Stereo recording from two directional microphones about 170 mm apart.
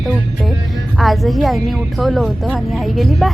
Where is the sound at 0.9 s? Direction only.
Centre (ahead or behind).